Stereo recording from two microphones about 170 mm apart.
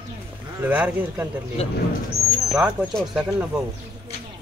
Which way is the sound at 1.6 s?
35° left (ahead or behind).